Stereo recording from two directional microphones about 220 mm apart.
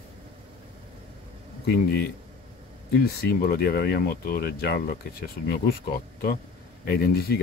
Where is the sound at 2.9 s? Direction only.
45° left (ahead or behind).